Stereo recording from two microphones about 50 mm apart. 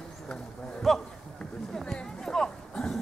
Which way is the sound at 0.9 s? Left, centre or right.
Centre.